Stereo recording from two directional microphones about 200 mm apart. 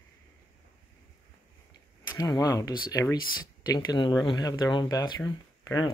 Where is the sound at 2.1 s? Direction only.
20° left (ahead or behind).